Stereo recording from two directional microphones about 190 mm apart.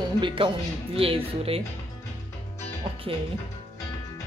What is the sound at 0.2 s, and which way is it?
Speech, 25° right (ahead or behind).